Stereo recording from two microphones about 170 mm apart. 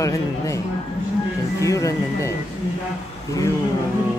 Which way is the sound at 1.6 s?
20° left (ahead or behind).